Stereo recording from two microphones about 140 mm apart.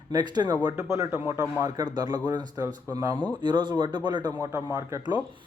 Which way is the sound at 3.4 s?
30° right (ahead or behind).